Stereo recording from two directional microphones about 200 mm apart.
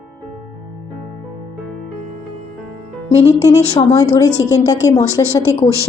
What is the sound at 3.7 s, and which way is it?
A woman's voice, 20° left (ahead or behind).